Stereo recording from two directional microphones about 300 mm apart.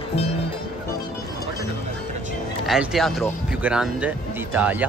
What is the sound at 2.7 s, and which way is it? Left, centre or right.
Speech, centre.